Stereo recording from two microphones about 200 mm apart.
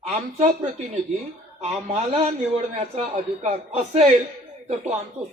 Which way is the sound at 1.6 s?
35° right (ahead or behind).